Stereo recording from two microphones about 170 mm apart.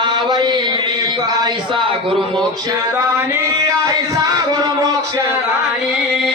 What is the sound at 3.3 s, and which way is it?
Music, 15° right (ahead or behind).